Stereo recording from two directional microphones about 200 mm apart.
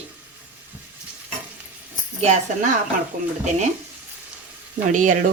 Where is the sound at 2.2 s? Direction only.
35° right (ahead or behind).